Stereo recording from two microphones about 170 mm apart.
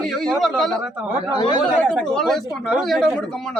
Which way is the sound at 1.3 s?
25° left (ahead or behind).